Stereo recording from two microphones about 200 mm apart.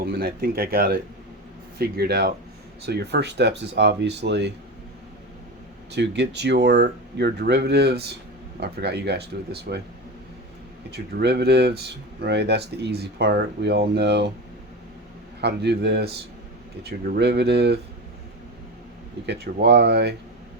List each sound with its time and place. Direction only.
0.0 s speech: 50° right (ahead or behind)
5.9 s speech: 60° right (ahead or behind)
10.9 s speech: 55° right (ahead or behind)
15.4 s speech: 55° right (ahead or behind)
19.2 s speech: 60° right (ahead or behind)